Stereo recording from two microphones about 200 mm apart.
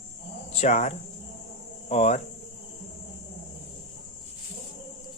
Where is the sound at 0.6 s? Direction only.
35° left (ahead or behind).